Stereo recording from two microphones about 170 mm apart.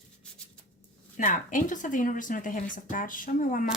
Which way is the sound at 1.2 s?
50° left (ahead or behind).